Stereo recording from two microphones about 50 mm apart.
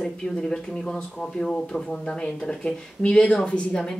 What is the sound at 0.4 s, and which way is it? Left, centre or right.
Speech, centre.